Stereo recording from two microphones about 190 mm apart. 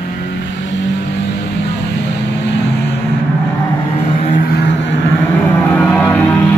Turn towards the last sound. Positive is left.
turn(degrees=10)  # may be behind; listen again after turning